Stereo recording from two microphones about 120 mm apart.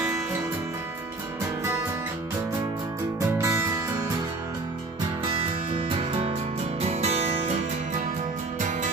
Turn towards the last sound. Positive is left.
turn(degrees=-65)  # may be behind; listen again after turning